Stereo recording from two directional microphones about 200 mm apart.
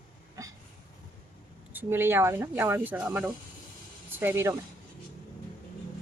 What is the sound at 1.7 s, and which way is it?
Speech, 10° right (ahead or behind).